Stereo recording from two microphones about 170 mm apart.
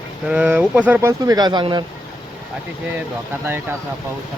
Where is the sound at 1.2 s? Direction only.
20° right (ahead or behind).